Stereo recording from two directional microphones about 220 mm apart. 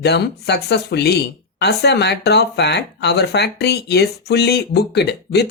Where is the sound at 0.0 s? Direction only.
50° left (ahead or behind).